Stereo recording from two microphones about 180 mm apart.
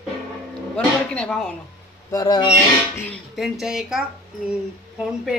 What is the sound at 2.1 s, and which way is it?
Speech, 20° left (ahead or behind).